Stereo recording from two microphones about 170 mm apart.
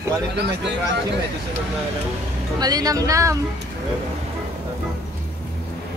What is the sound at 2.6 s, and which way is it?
Speech, 20° right (ahead or behind).